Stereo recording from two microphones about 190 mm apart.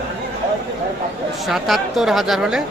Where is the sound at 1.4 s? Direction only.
Centre (ahead or behind).